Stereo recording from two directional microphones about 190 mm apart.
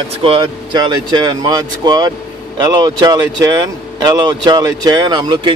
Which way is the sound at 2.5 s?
20° right (ahead or behind).